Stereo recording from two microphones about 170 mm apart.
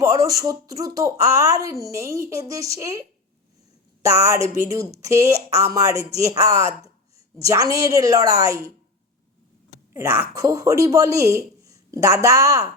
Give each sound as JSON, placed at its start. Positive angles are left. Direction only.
{"t": 0.0, "sound": "speech", "side_deg": -20}
{"t": 4.0, "sound": "speech", "side_deg": -20}
{"t": 9.9, "sound": "speech", "side_deg": -20}